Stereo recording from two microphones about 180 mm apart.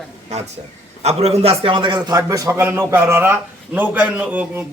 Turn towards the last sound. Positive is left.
turn(degrees=-10)  # may be behind; listen again after turning